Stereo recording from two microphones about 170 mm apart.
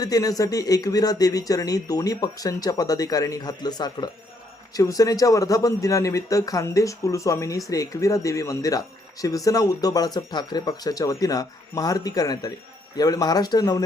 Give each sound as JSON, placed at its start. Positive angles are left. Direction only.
{"t": 0.0, "sound": "speech", "side_deg": 20}